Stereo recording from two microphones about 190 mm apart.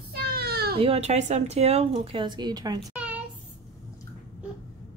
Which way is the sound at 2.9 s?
5° right (ahead or behind).